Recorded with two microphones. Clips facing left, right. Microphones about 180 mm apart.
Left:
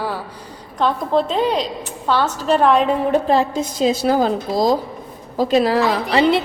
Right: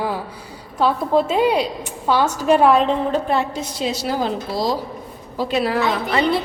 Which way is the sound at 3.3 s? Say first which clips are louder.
Left 4 dB; 45° left (ahead or behind).